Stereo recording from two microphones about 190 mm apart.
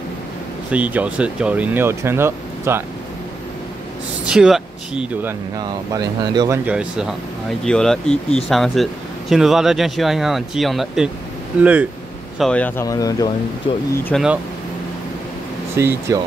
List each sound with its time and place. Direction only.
0.7 s speech: 10° right (ahead or behind)
4.3 s speech: 5° right (ahead or behind)
5.6 s speech: 20° right (ahead or behind)
6.6 s speech: 5° right (ahead or behind)
12.4 s speech: 5° left (ahead or behind)
13.7 s speech: 30° left (ahead or behind)
14.1 s speech: 5° left (ahead or behind)
15.8 s speech: 15° right (ahead or behind)